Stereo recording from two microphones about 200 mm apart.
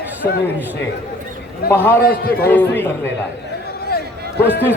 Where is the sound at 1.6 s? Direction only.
10° left (ahead or behind).